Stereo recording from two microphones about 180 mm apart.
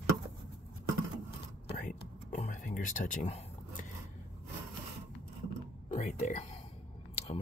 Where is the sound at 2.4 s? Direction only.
45° left (ahead or behind).